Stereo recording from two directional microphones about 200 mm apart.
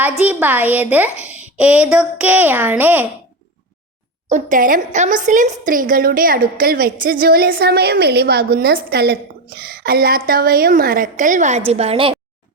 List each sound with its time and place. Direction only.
0.0 s a woman's voice: 5° right (ahead or behind)
4.3 s a woman's voice: 40° right (ahead or behind)